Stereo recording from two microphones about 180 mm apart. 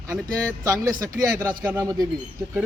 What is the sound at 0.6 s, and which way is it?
Speech, 20° right (ahead or behind).